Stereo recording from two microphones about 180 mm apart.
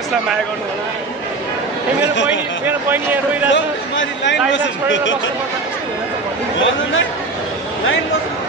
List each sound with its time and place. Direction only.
2.6 s speech: 10° right (ahead or behind)
3.4 s speech: 90° left
6.6 s a man's voice: 90° left